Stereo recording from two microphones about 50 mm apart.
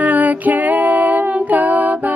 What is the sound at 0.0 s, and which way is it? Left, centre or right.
Music, right.